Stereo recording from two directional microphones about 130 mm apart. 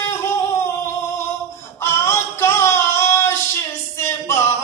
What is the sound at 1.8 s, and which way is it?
Female singing, 20° left (ahead or behind).